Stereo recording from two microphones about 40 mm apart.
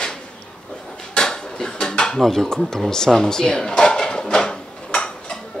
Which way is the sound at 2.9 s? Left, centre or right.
Centre.